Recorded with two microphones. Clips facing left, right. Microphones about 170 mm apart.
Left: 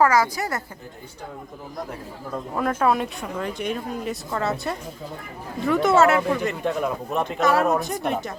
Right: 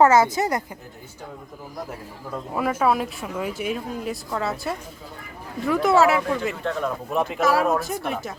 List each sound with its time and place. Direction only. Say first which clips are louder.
0.0 s a woman's voice: right 3 dB; 25° right (ahead or behind)
1.9 s speech: left 1 dB; 5° right (ahead or behind)
6.6 s speech: left 2 dB; 15° left (ahead or behind)
7.1 s speech: right 1 dB; centre (ahead or behind)